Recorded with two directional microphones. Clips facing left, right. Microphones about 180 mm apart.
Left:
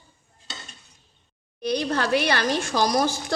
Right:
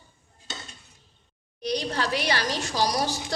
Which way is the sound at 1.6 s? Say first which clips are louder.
Left 3 dB; 55° left (ahead or behind).